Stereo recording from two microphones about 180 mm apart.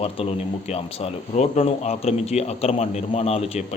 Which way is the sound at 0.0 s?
35° left (ahead or behind).